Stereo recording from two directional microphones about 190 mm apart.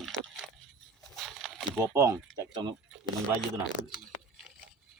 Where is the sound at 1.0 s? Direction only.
Centre (ahead or behind).